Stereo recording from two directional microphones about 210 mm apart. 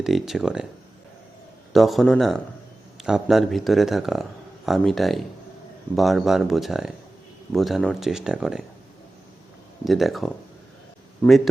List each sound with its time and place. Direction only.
0.0 s speech: centre (ahead or behind)
1.7 s speech: centre (ahead or behind)
9.8 s speech: centre (ahead or behind)